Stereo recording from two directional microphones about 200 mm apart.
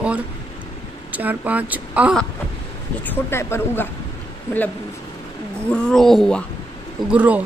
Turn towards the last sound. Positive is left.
turn(degrees=-5)  # may be behind; listen again after turning